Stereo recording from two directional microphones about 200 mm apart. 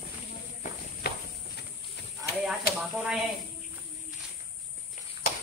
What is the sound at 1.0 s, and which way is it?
Walk, 55° left (ahead or behind).